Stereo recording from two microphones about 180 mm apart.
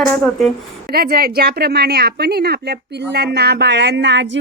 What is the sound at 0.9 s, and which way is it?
A woman's voice, 60° right (ahead or behind).